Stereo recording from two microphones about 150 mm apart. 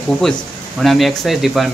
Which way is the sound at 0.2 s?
Centre (ahead or behind).